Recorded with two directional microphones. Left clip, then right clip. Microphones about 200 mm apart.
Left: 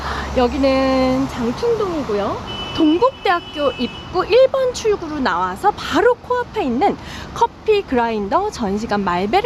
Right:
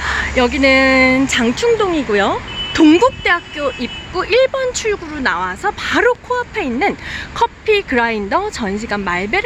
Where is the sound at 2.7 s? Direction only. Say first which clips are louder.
Right 6 dB; 30° right (ahead or behind).